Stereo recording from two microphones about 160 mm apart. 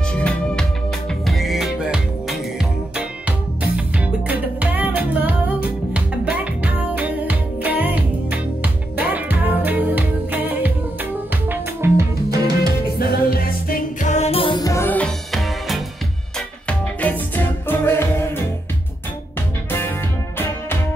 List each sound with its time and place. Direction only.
0.1 s music: 5° left (ahead or behind); by 12.4 s 20° right (ahead or behind)
12.8 s music: 75° left (ahead or behind)
14.1 s music: 40° left (ahead or behind); by 18.4 s 15° left (ahead or behind)